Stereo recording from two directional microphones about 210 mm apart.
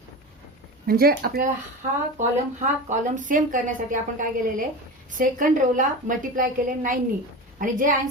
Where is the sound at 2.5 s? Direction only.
35° right (ahead or behind).